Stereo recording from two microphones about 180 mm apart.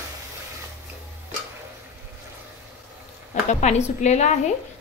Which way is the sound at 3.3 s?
40° left (ahead or behind).